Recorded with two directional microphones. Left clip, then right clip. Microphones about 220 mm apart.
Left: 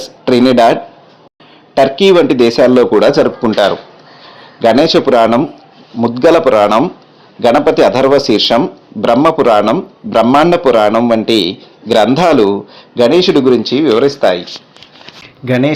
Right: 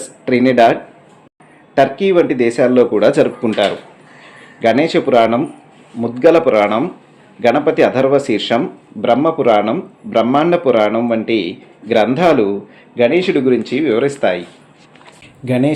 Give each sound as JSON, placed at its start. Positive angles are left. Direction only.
{"t": 0.0, "sound": "a sound", "side_deg": 30}
{"t": 1.7, "sound": "speech", "side_deg": 35}
{"t": 3.2, "sound": "a man's voice", "side_deg": 20}
{"t": 15.4, "sound": "speech", "side_deg": 5}